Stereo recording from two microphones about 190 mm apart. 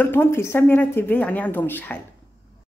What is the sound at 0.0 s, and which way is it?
Speech, 10° left (ahead or behind).